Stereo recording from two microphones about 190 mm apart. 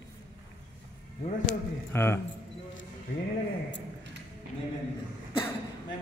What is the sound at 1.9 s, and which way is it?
Speech, 10° left (ahead or behind).